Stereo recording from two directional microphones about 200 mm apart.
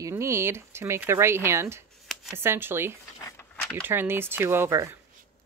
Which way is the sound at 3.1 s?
15° left (ahead or behind).